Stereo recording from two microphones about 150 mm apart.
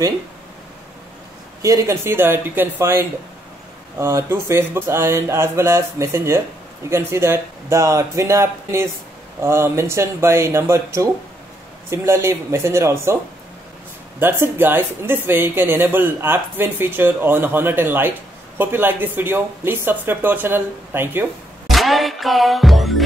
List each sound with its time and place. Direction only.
1.6 s speech: 20° right (ahead or behind)
14.2 s speech: 15° right (ahead or behind)
21.6 s music: centre (ahead or behind)